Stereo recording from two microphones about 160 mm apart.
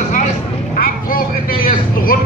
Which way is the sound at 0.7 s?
65° left (ahead or behind).